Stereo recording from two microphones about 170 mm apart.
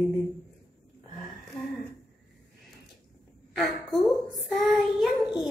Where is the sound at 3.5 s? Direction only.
Centre (ahead or behind).